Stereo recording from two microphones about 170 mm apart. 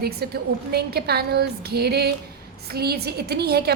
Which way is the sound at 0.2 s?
65° right (ahead or behind).